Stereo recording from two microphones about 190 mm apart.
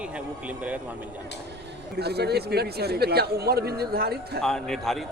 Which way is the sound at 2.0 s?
60° right (ahead or behind).